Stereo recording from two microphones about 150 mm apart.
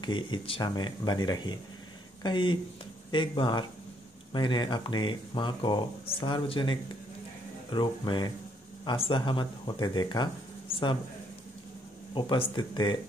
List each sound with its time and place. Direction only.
0.0 s speech: 30° left (ahead or behind)
12.1 s speech: 35° left (ahead or behind)